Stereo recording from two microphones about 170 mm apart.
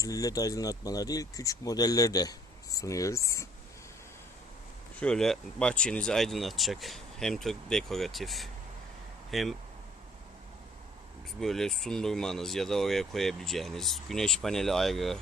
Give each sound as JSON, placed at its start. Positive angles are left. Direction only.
{"t": 0.0, "sound": "speech", "side_deg": 20}
{"t": 4.9, "sound": "speech", "side_deg": 5}
{"t": 11.3, "sound": "speech", "side_deg": 5}